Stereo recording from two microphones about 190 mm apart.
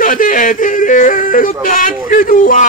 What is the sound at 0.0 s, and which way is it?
Yodeling, 45° left (ahead or behind).